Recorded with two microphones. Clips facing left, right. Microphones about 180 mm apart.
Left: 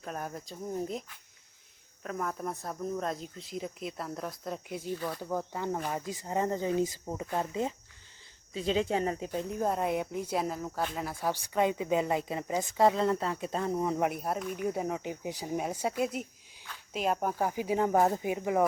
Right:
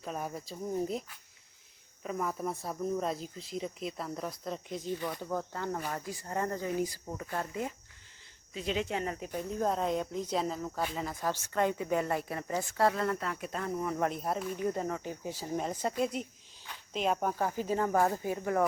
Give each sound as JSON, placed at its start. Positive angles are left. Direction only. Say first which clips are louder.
{"t": 0.0, "sound": "speech", "louder": "right 1 dB", "side_deg": 0}
{"t": 2.0, "sound": "speech", "louder": "right 1 dB", "side_deg": -5}
{"t": 8.5, "sound": "speech", "louder": "left 4 dB", "side_deg": 30}
{"t": 9.3, "sound": "speech", "louder": "left 2 dB", "side_deg": 20}
{"t": 9.6, "sound": "a woman's voice", "louder": "even", "side_deg": 5}
{"t": 14.0, "sound": "a woman's voice", "louder": "left 1 dB", "side_deg": 5}